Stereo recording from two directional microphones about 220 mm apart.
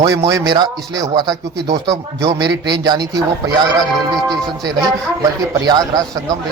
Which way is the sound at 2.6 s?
20° right (ahead or behind).